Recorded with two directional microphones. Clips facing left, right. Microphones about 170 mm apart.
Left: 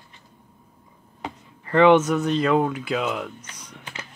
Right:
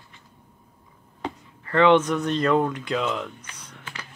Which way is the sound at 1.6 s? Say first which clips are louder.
Left 2 dB; 15° left (ahead or behind).